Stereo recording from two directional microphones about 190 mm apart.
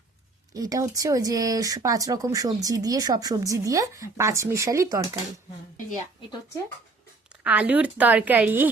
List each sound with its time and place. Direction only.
0.5 s speech: 20° right (ahead or behind)
7.4 s speech: 5° right (ahead or behind)